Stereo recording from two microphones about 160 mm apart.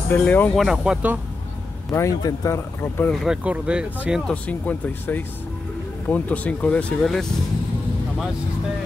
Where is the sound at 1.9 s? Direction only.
20° left (ahead or behind).